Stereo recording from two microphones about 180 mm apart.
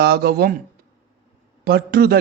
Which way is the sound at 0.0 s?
65° right (ahead or behind).